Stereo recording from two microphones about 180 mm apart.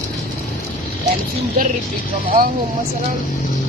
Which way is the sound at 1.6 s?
50° right (ahead or behind).